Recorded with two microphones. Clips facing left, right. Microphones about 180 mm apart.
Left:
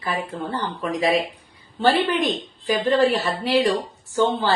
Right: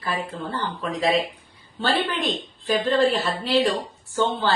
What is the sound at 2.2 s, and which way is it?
Speech, 15° left (ahead or behind).